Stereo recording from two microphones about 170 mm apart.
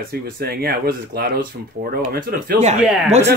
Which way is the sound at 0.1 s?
65° right (ahead or behind).